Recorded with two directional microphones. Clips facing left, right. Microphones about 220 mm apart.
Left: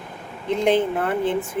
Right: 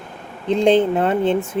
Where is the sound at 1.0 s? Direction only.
25° right (ahead or behind).